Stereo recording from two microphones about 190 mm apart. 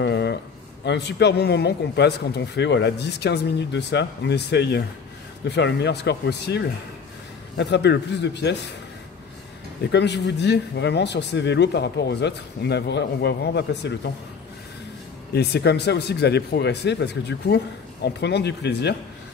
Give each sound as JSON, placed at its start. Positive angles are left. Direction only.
{"t": 0.0, "sound": "a sound", "side_deg": 65}
{"t": 0.8, "sound": "speech", "side_deg": 65}
{"t": 9.8, "sound": "speech", "side_deg": 65}
{"t": 15.3, "sound": "speech", "side_deg": 60}